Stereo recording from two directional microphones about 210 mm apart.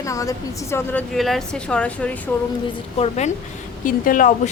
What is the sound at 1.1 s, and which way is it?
Speech, centre (ahead or behind).